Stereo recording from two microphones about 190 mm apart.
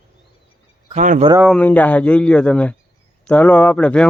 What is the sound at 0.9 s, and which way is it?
Speech, 40° right (ahead or behind).